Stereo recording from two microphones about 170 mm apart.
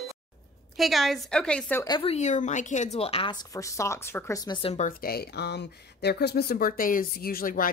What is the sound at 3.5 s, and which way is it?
A woman's voice, 20° left (ahead or behind).